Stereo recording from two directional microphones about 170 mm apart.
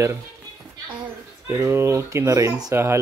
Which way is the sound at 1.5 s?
15° right (ahead or behind).